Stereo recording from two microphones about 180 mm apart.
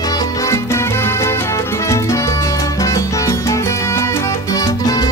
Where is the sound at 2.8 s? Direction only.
20° left (ahead or behind).